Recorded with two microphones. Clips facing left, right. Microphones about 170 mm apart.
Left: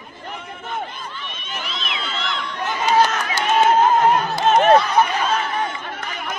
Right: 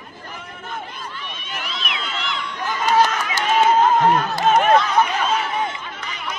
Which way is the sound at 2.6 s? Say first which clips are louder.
Even; centre (ahead or behind).